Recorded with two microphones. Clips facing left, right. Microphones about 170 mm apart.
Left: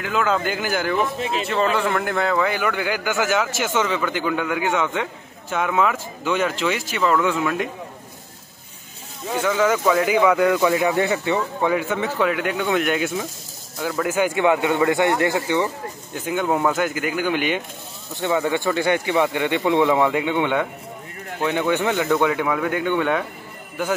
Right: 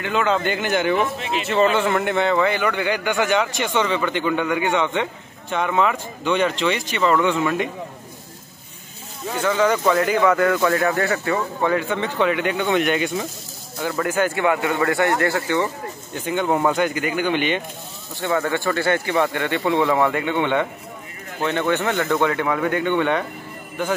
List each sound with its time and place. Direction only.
0.0 s speech: centre (ahead or behind)
9.3 s speech: 10° left (ahead or behind)
11.7 s speech: 5° left (ahead or behind)
16.3 s speech: 5° left (ahead or behind)